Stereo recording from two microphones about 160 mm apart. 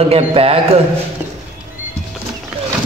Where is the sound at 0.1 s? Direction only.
35° right (ahead or behind).